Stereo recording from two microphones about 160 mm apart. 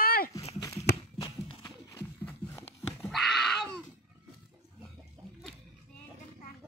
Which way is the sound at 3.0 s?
Centre (ahead or behind).